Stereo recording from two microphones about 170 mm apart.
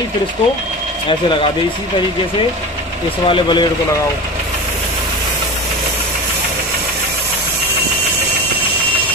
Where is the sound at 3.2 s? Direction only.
30° left (ahead or behind).